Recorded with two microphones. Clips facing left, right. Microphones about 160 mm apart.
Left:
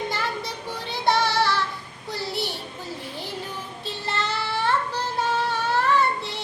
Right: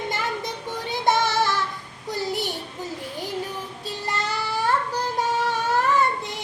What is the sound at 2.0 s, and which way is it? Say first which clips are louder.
Child singing: right 3 dB; 45° right (ahead or behind).